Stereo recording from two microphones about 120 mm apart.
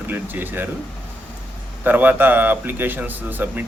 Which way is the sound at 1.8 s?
15° right (ahead or behind).